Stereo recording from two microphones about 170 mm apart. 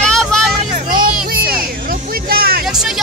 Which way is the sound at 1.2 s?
60° right (ahead or behind).